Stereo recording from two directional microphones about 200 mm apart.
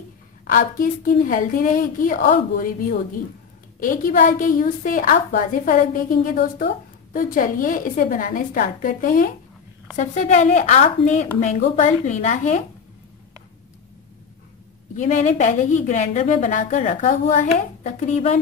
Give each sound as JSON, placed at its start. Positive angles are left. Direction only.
{"t": 0.5, "sound": "a woman's voice", "side_deg": 45}
{"t": 15.0, "sound": "a woman's voice", "side_deg": 40}